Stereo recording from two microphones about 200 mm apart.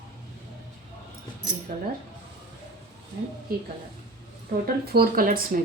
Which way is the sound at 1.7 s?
40° right (ahead or behind).